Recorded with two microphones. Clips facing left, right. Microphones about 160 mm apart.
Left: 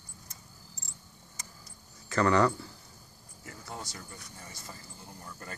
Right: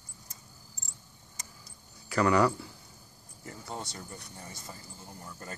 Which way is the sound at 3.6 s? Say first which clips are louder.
Right 3 dB; 15° right (ahead or behind).